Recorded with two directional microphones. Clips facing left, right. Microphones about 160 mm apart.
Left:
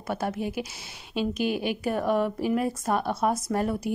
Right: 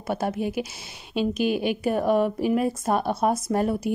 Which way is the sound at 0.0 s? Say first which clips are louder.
Right 3 dB; 20° right (ahead or behind).